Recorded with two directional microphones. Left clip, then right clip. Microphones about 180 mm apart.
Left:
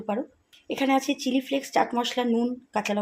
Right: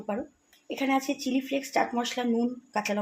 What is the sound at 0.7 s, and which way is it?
A woman's voice, 35° left (ahead or behind).